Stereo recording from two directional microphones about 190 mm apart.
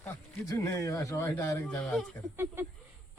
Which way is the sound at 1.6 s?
5° left (ahead or behind).